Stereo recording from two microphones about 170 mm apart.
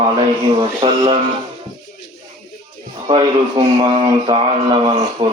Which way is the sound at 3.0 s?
30° right (ahead or behind).